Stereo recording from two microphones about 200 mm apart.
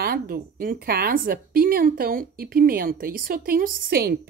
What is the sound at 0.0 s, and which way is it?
Speech, 50° right (ahead or behind).